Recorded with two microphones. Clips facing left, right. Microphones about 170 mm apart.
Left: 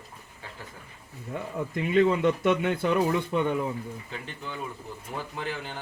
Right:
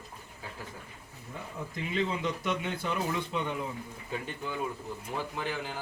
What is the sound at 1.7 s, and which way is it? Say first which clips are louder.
Speech: left 10 dB; 60° left (ahead or behind).